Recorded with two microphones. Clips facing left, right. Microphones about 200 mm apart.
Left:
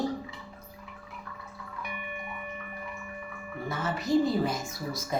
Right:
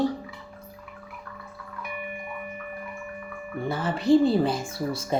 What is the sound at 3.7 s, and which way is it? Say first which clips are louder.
Speech: right 7 dB; 30° right (ahead or behind).